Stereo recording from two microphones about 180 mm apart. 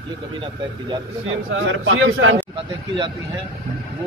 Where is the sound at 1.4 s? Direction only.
90° right.